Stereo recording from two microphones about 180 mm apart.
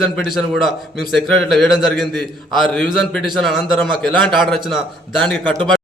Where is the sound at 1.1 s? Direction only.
Centre (ahead or behind).